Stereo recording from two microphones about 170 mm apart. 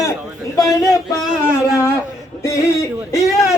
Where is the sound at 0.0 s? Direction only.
20° left (ahead or behind).